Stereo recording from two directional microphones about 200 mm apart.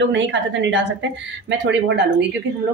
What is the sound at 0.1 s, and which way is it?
Speech, 65° right (ahead or behind).